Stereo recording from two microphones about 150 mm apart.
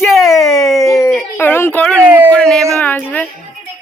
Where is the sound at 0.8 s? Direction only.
20° left (ahead or behind).